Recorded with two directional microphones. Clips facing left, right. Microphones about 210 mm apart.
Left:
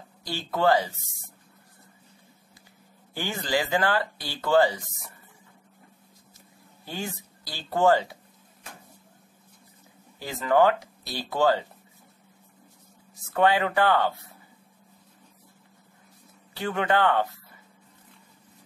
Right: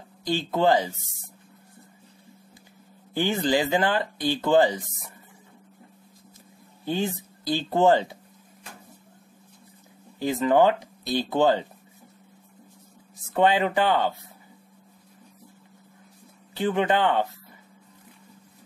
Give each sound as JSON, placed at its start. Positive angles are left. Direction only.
{"t": 0.2, "sound": "speech", "side_deg": -20}
{"t": 3.2, "sound": "speech", "side_deg": -20}
{"t": 6.9, "sound": "speech", "side_deg": -20}
{"t": 10.1, "sound": "speech", "side_deg": -20}
{"t": 13.3, "sound": "speech", "side_deg": -20}
{"t": 16.5, "sound": "speech", "side_deg": -20}